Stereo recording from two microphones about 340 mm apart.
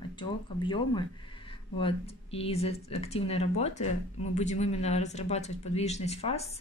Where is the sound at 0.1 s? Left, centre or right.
Centre.